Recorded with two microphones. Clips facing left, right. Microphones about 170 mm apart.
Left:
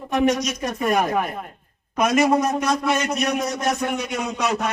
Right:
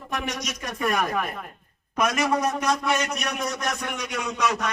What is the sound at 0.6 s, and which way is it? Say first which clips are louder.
A man's voice: left 2 dB; 25° left (ahead or behind).